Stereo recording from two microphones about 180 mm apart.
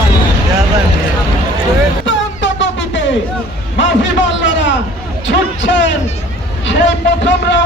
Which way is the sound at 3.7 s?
90° left.